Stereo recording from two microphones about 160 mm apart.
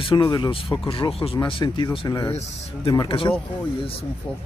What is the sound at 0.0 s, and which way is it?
Speech, 25° left (ahead or behind).